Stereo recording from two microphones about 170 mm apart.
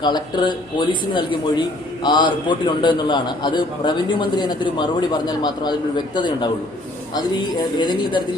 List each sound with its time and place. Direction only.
0.0 s a man's voice: 25° left (ahead or behind)